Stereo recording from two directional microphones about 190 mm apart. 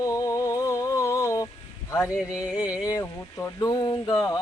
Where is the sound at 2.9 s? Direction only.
15° left (ahead or behind).